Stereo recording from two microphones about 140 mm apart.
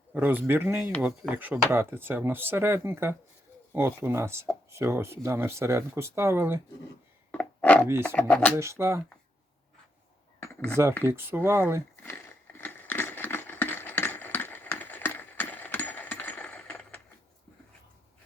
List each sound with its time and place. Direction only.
0.1 s speech: 15° right (ahead or behind)
7.3 s chopping: 10° left (ahead or behind)
8.0 s speech: 10° left (ahead or behind)
8.5 s speech: 20° right (ahead or behind)
11.0 s speech: 15° right (ahead or behind)
12.0 s a sound: 15° left (ahead or behind)